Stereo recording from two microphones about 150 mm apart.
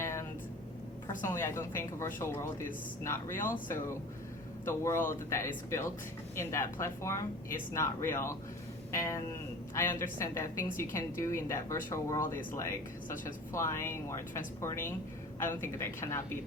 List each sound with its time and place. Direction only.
0.0 s vehicle: 15° left (ahead or behind)
1.2 s speech: 15° left (ahead or behind)
4.6 s speech: 15° left (ahead or behind)